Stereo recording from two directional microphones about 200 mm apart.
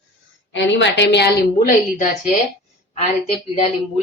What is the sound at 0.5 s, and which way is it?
A woman's voice, 65° left (ahead or behind).